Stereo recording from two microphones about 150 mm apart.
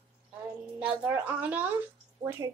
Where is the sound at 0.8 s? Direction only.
10° right (ahead or behind).